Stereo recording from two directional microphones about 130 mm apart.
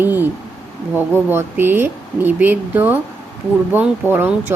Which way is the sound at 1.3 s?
15° right (ahead or behind).